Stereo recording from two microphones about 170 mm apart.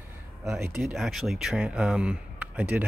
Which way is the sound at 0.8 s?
Centre (ahead or behind).